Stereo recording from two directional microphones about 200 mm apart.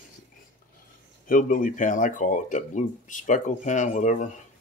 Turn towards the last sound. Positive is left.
turn(degrees=40)  # may be behind; listen again after turning